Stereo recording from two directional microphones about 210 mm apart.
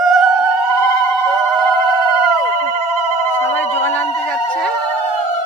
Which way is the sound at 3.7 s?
10° left (ahead or behind).